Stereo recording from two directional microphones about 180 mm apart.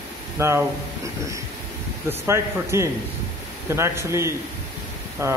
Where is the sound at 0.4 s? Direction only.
15° right (ahead or behind).